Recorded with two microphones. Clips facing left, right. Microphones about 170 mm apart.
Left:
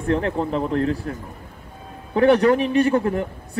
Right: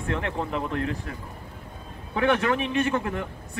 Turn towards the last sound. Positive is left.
turn(degrees=40)  # may be behind; listen again after turning